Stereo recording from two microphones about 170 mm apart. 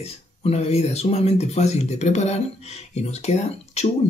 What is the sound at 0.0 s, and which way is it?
Speech, 40° left (ahead or behind).